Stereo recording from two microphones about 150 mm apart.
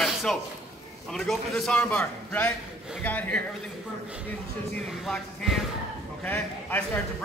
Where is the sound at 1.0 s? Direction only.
Centre (ahead or behind).